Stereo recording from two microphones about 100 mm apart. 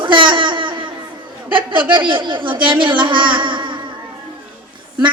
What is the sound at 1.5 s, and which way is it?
Speech, 55° right (ahead or behind).